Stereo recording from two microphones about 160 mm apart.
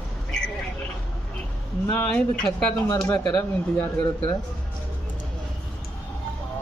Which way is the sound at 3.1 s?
25° left (ahead or behind).